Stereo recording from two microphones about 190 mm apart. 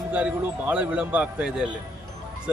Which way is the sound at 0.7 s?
10° right (ahead or behind).